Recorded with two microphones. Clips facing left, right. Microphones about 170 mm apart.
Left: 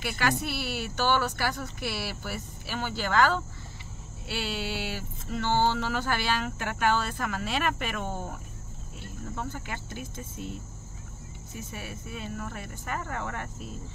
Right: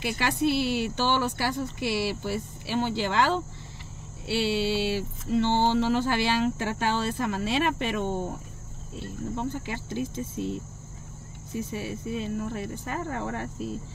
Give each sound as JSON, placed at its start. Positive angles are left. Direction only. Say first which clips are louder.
{"t": 0.0, "sound": "speech", "louder": "right 4 dB", "side_deg": -25}
{"t": 11.5, "sound": "speech", "louder": "right 8 dB", "side_deg": -25}